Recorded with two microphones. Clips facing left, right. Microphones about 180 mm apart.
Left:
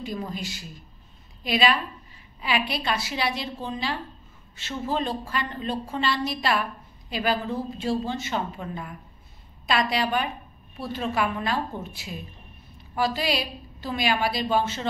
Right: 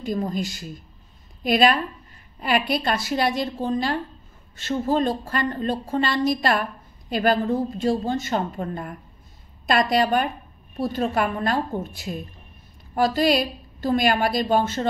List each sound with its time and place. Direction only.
0.0 s a woman's voice: 45° right (ahead or behind)